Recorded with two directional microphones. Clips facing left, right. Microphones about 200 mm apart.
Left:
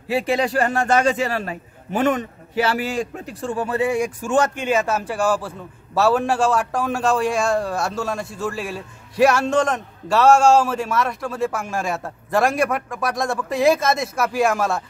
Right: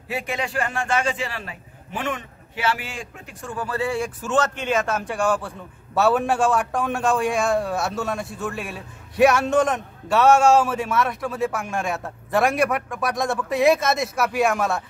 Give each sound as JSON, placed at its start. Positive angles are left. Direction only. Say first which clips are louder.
{"t": 0.1, "sound": "a man's voice", "louder": "left 7 dB", "side_deg": 30}